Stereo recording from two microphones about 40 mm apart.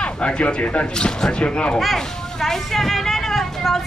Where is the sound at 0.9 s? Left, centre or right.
Centre.